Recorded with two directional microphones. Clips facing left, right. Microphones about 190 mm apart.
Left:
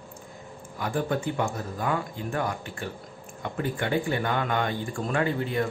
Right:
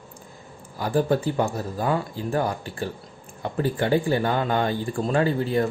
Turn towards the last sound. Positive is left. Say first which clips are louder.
# right 4 dB
turn(degrees=-35)  # may be behind; listen again after turning